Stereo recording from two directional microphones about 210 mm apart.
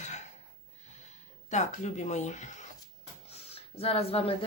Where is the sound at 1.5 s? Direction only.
35° left (ahead or behind).